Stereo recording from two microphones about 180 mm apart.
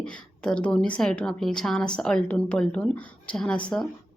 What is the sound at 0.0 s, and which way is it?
A woman's voice, 5° left (ahead or behind).